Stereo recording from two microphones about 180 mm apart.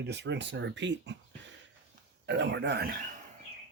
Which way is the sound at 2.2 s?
75° right (ahead or behind).